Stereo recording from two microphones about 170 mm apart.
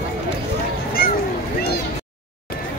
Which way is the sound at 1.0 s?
60° left (ahead or behind).